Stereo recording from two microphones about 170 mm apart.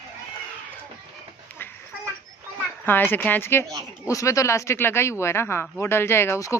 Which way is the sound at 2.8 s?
10° left (ahead or behind).